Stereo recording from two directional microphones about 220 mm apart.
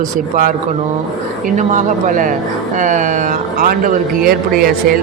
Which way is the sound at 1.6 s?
35° right (ahead or behind).